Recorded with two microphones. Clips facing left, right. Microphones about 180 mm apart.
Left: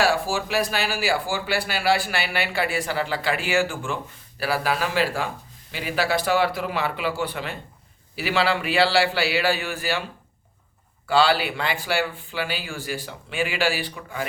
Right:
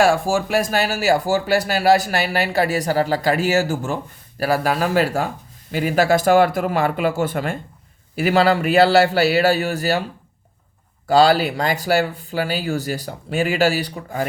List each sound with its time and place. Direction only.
0.0 s a man's voice: 50° right (ahead or behind)
11.0 s speech: 40° right (ahead or behind)